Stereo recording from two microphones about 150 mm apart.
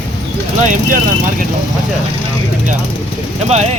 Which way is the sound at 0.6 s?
60° right (ahead or behind).